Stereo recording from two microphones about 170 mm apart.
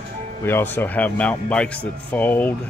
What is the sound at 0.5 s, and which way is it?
Speech, 15° left (ahead or behind).